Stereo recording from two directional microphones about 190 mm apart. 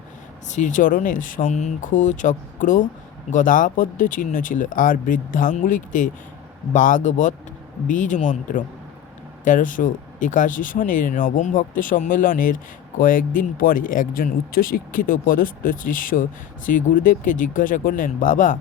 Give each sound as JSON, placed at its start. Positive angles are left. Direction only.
{"t": 0.5, "sound": "speech", "side_deg": 40}